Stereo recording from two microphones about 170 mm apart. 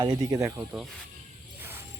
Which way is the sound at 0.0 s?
25° right (ahead or behind).